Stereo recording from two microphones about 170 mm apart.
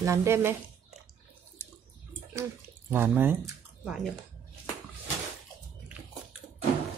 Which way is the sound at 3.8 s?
Centre (ahead or behind).